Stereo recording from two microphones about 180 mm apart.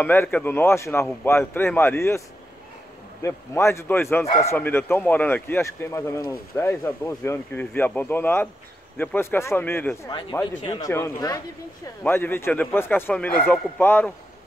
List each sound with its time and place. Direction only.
0.0 s speech: 10° left (ahead or behind)
10.6 s speech: 20° left (ahead or behind)